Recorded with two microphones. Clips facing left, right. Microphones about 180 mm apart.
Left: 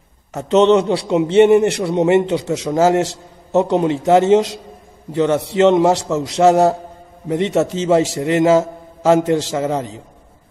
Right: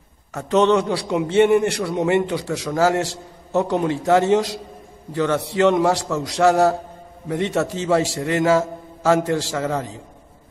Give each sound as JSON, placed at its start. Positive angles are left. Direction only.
{"t": 0.3, "sound": "a man's voice", "side_deg": 20}